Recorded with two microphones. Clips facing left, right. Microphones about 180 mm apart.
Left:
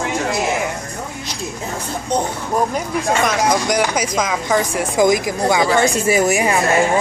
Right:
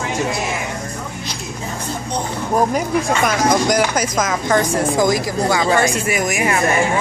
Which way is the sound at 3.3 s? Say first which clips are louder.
Right 1 dB; 5° right (ahead or behind).